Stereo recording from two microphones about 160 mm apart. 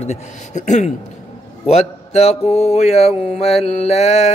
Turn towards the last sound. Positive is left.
turn(degrees=45)  # may be behind; listen again after turning